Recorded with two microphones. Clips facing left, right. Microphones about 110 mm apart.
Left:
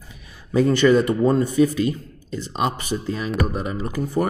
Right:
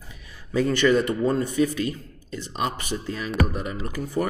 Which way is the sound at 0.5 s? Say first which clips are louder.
Left 4 dB; 30° left (ahead or behind).